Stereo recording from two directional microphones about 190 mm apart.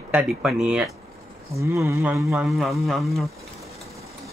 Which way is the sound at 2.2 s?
Centre (ahead or behind).